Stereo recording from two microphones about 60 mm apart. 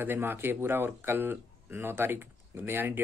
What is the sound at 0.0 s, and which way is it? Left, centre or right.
Speech, right.